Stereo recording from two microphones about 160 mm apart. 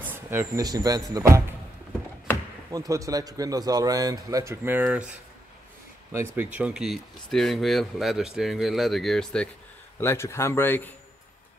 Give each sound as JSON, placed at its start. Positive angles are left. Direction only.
{"t": 0.0, "sound": "speech", "side_deg": -15}
{"t": 2.7, "sound": "a man's voice", "side_deg": -20}
{"t": 6.1, "sound": "speech", "side_deg": -15}
{"t": 9.9, "sound": "speech", "side_deg": 15}